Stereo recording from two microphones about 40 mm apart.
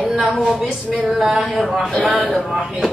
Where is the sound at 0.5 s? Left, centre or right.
Centre.